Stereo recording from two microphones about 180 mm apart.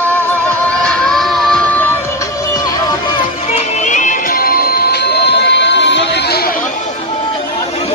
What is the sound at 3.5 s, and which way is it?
Music, 40° left (ahead or behind).